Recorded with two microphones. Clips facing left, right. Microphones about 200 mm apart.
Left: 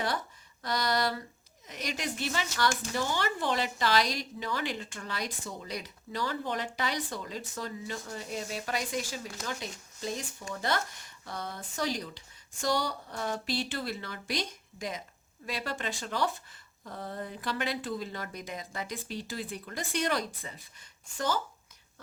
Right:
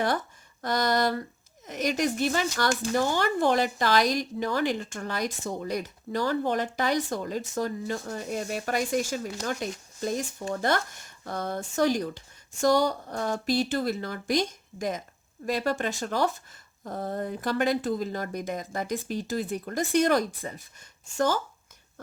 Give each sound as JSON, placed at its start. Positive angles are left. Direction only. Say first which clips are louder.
{"t": 0.6, "sound": "speech", "louder": "right 5 dB", "side_deg": -50}